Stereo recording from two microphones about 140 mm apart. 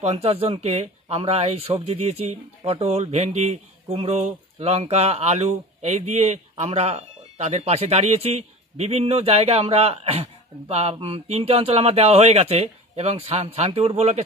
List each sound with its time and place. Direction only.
0.0 s speech: 45° right (ahead or behind)